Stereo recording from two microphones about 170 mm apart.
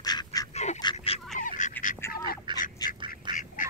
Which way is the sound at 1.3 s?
45° left (ahead or behind).